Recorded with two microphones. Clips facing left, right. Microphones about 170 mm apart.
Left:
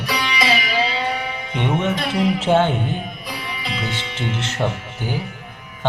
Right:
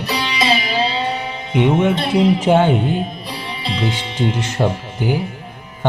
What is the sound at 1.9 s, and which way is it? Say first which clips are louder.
Music: right 5 dB; 30° right (ahead or behind).